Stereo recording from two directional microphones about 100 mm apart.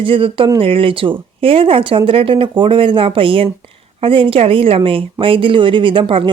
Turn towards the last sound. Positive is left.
turn(degrees=-60)  # may be behind; listen again after turning